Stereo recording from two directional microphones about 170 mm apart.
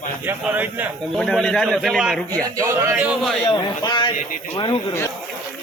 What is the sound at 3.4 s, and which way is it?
Speech, 25° left (ahead or behind).